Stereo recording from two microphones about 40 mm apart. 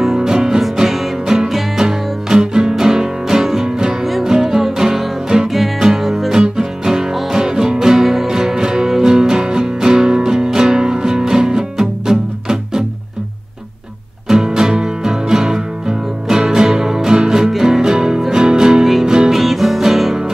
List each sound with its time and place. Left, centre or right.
0.0 s music: centre
14.2 s music: centre
19.3 s music: centre